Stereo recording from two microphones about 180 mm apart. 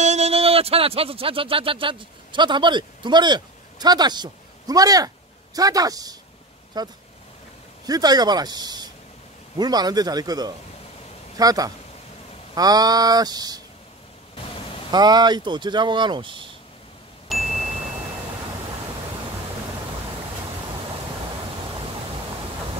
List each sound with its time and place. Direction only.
0.0 s speech: 40° right (ahead or behind); by 13.6 s 20° right (ahead or behind)
14.9 s speech: 20° right (ahead or behind)
17.3 s ding: centre (ahead or behind)